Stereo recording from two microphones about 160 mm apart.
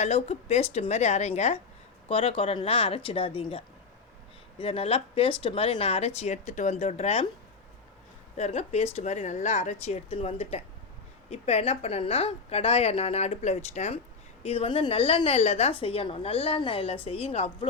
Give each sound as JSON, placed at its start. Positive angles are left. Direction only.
{"t": 0.0, "sound": "a woman's voice", "side_deg": 45}
{"t": 4.6, "sound": "a woman's voice", "side_deg": 35}
{"t": 8.4, "sound": "a woman's voice", "side_deg": 40}